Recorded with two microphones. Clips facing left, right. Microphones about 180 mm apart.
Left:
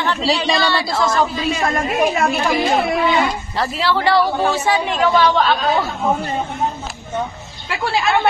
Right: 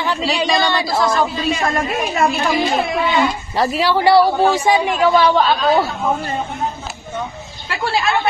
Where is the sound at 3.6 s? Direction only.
15° right (ahead or behind).